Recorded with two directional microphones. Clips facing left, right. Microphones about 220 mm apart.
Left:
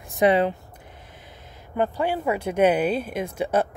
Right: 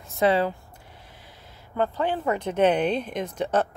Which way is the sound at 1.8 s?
10° left (ahead or behind).